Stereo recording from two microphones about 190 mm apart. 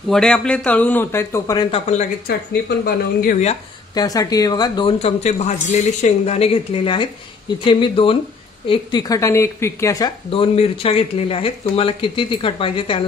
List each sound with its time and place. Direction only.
0.1 s speech: 5° left (ahead or behind); by 1.8 s 20° left (ahead or behind)
2.8 s speech: 50° left (ahead or behind)
3.9 s a woman's voice: 20° left (ahead or behind)